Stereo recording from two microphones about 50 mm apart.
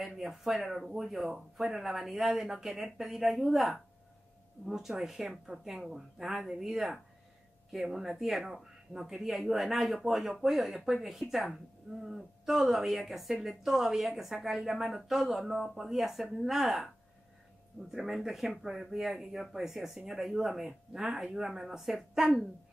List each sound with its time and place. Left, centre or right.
0.0 s speech: centre